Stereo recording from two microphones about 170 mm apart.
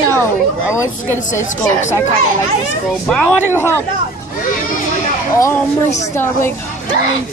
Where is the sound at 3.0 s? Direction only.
5° left (ahead or behind).